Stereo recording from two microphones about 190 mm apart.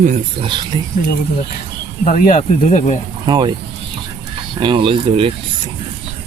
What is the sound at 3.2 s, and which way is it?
Speech, 25° right (ahead or behind).